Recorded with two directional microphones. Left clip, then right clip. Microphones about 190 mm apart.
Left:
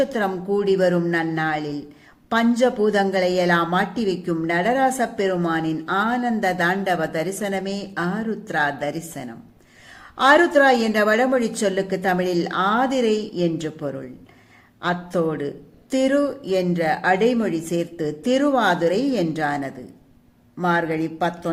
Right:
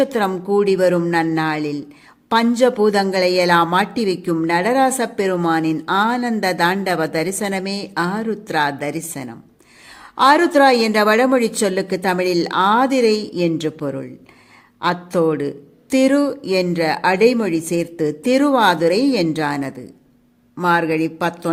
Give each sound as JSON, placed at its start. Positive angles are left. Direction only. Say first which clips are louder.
{"t": 0.0, "sound": "a woman's voice", "louder": "right 4 dB", "side_deg": -45}